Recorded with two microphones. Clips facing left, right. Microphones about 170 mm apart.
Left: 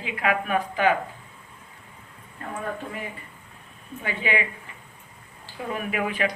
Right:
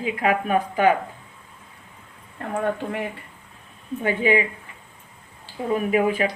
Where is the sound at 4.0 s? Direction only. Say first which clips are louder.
Right 7 dB; 40° right (ahead or behind).